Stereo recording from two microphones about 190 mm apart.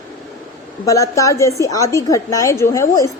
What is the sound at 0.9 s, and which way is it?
A woman's voice, 15° left (ahead or behind).